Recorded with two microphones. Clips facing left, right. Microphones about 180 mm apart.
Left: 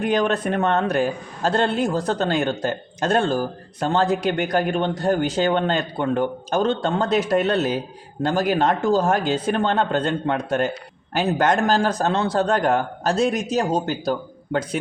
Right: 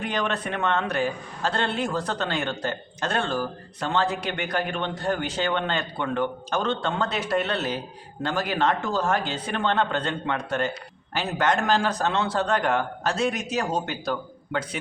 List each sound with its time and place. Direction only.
0.0 s a man's voice: 45° left (ahead or behind)